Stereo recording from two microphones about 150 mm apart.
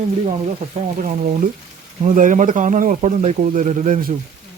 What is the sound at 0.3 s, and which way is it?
Speech, 40° right (ahead or behind).